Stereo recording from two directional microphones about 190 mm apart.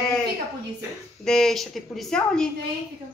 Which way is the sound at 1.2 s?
Centre (ahead or behind).